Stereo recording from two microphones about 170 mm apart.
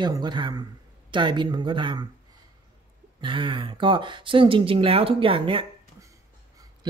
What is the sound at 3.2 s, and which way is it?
Speech, 30° right (ahead or behind).